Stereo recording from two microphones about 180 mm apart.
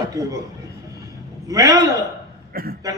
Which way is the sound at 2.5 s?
55° right (ahead or behind).